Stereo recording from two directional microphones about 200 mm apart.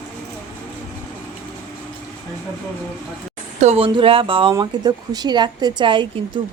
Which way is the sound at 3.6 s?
30° right (ahead or behind).